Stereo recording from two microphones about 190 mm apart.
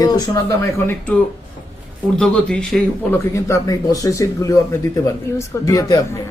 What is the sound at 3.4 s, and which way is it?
Speech, 15° left (ahead or behind).